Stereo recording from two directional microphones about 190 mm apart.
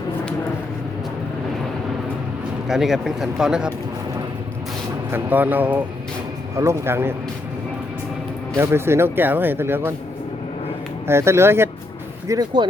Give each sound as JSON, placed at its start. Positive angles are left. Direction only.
{"t": 2.6, "sound": "speech", "side_deg": 0}
{"t": 5.1, "sound": "speech", "side_deg": -10}
{"t": 8.5, "sound": "speech", "side_deg": -15}
{"t": 11.0, "sound": "speech", "side_deg": -15}